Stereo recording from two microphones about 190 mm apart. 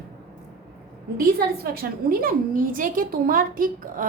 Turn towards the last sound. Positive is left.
turn(degrees=-45)  # may be behind; listen again after turning